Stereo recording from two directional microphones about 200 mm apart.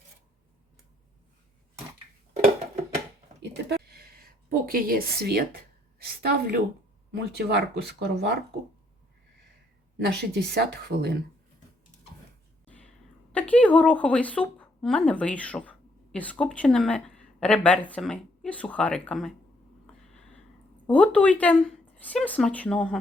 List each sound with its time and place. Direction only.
3.4 s a sound: 55° right (ahead or behind)
6.0 s a woman's voice: 50° right (ahead or behind)
10.1 s speech: 55° right (ahead or behind)
12.6 s a sound: 5° left (ahead or behind)
13.3 s a woman's voice: 5° left (ahead or behind)
20.8 s a woman's voice: 5° left (ahead or behind)